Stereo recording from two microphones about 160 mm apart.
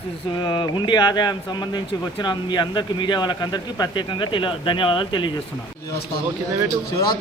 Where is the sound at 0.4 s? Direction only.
25° left (ahead or behind).